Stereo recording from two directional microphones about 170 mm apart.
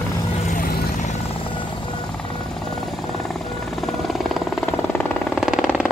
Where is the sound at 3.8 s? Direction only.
Centre (ahead or behind).